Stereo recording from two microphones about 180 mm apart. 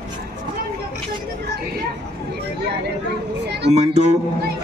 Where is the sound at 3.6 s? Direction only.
35° right (ahead or behind).